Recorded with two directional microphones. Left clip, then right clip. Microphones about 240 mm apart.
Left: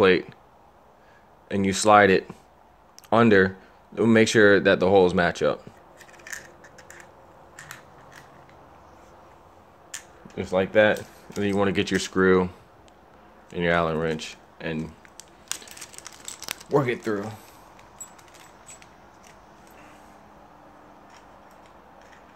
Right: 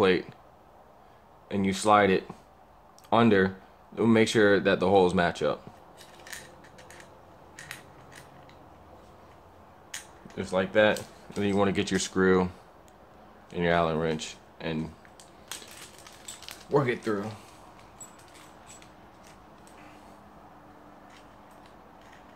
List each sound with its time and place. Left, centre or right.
0.0 s speech: centre
1.5 s speech: centre
10.3 s speech: left
16.0 s crumpling: left
16.7 s speech: centre